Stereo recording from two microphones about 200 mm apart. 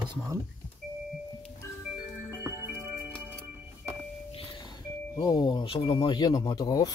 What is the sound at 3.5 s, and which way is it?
Music, 5° right (ahead or behind).